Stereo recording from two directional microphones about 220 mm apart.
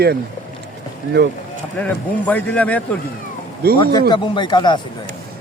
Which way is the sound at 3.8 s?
20° left (ahead or behind).